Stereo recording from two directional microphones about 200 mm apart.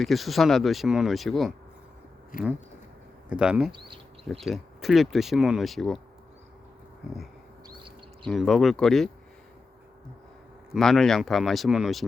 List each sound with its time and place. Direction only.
0.0 s speech: centre (ahead or behind)
2.3 s speech: 45° left (ahead or behind)
3.2 s speech: 5° right (ahead or behind)
8.2 s speech: centre (ahead or behind)
10.8 s speech: centre (ahead or behind)